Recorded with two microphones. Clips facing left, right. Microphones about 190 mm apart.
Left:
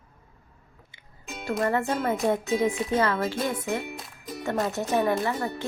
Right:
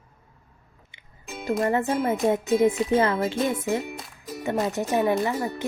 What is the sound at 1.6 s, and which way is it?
Speech, 20° right (ahead or behind).